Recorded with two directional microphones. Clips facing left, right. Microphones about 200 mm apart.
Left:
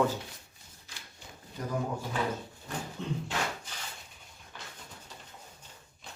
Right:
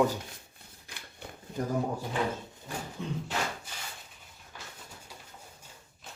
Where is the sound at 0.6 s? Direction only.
60° right (ahead or behind).